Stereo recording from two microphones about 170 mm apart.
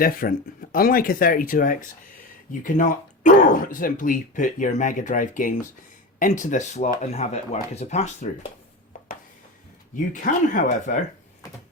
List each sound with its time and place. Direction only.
0.0 s speech: 60° left (ahead or behind)
10.1 s speech: 50° left (ahead or behind)